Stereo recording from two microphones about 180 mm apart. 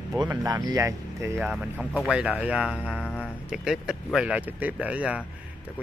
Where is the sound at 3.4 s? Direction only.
5° right (ahead or behind).